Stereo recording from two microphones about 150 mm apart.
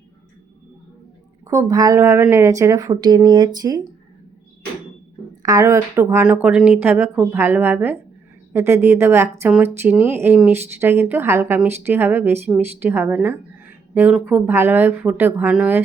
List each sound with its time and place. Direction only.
1.5 s speech: 25° right (ahead or behind)
5.4 s a woman's voice: 25° right (ahead or behind); by 15.8 s 5° right (ahead or behind)